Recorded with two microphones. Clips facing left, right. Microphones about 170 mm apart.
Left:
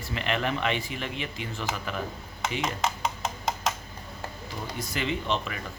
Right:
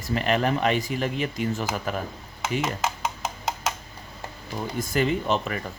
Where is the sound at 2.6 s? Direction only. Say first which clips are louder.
Right 1 dB; 5° right (ahead or behind).